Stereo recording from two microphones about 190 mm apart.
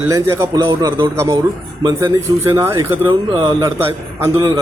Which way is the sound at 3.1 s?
25° right (ahead or behind).